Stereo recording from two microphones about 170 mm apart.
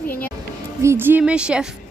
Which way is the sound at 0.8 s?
15° right (ahead or behind).